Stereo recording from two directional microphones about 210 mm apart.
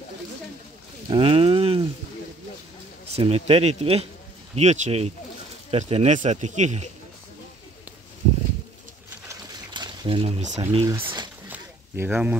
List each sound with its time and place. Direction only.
1.1 s cattle: 25° right (ahead or behind)
3.2 s speech: 30° right (ahead or behind)
9.3 s a sound: 20° right (ahead or behind)